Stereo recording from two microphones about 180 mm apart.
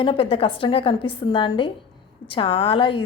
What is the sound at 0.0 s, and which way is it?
A woman's voice, 30° left (ahead or behind).